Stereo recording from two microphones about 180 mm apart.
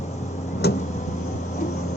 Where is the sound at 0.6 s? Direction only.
65° left (ahead or behind).